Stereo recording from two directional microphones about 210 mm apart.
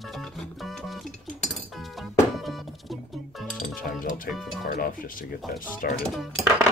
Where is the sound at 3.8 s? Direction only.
40° left (ahead or behind).